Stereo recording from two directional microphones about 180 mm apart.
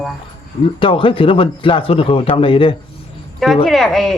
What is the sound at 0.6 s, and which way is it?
A man's voice, 30° left (ahead or behind).